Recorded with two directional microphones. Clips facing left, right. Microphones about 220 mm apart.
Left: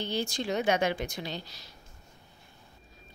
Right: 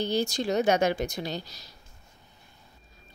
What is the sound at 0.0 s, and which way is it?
Speech, 40° right (ahead or behind).